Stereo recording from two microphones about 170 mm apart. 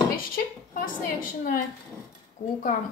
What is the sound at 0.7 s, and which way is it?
Speech, 55° left (ahead or behind).